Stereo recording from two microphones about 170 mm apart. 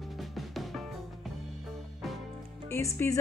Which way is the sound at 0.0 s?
Centre (ahead or behind).